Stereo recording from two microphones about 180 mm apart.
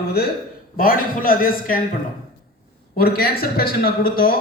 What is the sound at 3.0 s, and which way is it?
Speech, 55° left (ahead or behind).